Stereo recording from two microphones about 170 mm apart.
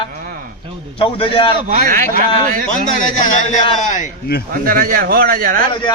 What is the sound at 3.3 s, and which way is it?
Speech, 45° left (ahead or behind).